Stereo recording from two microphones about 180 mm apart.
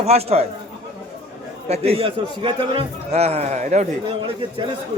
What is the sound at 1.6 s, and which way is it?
A man's voice, 35° right (ahead or behind).